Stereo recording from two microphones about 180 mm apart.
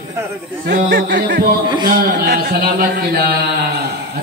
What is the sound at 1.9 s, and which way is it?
Speech, 55° right (ahead or behind).